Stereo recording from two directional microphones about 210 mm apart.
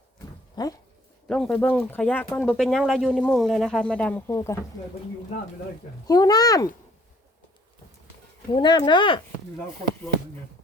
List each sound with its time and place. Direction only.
0.6 s speech: 20° left (ahead or behind)
1.3 s speech: 5° left (ahead or behind)
6.1 s speech: 20° left (ahead or behind)
8.5 s speech: 20° left (ahead or behind)